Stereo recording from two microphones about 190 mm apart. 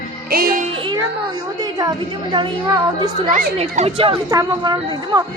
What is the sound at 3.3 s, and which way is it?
Speech, 40° right (ahead or behind).